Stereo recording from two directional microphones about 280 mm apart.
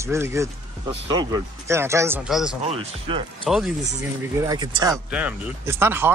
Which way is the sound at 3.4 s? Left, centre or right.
Centre.